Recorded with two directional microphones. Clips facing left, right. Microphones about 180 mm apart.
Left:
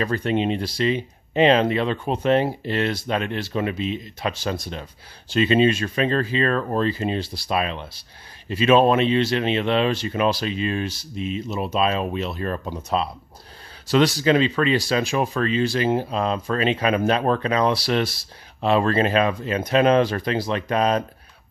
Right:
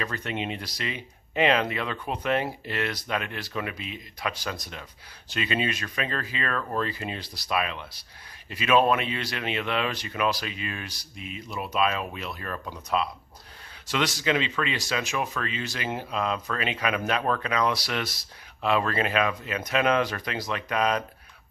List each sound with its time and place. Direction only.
0.0 s speech: 35° left (ahead or behind)